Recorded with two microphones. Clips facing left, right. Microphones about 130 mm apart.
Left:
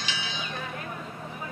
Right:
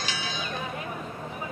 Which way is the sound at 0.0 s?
45° right (ahead or behind).